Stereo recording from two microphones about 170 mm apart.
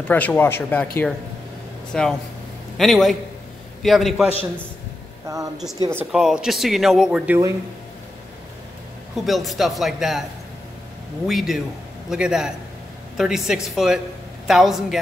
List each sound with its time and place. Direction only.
0.1 s speech: 10° left (ahead or behind)
1.9 s speech: 5° left (ahead or behind)
5.3 s a woman's voice: 15° right (ahead or behind)
5.9 s speech: 5° right (ahead or behind)
9.2 s speech: centre (ahead or behind)
11.2 s speech: centre (ahead or behind)